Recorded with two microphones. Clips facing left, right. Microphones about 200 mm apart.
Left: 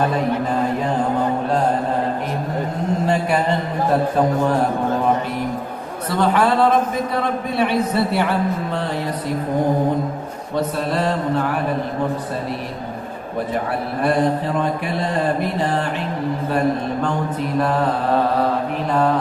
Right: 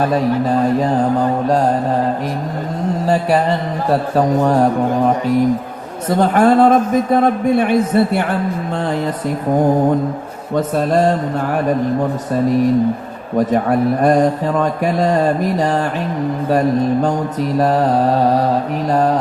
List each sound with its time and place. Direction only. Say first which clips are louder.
6.1 s a man's voice: right 5 dB; 45° right (ahead or behind)
10.5 s a man's voice: right 6 dB; 50° right (ahead or behind)
13.4 s a man's voice: right 9 dB; 45° right (ahead or behind)
17.6 s mantra: right 5 dB; 40° right (ahead or behind)
18.9 s mantra: right 3 dB; 40° right (ahead or behind)